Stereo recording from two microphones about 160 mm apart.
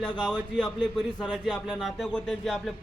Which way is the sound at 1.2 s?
Centre (ahead or behind).